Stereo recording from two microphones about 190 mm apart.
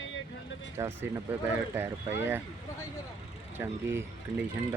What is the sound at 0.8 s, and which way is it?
Speech, 15° right (ahead or behind).